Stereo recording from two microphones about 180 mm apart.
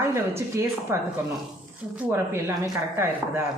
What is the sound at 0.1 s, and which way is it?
Speech, 15° right (ahead or behind).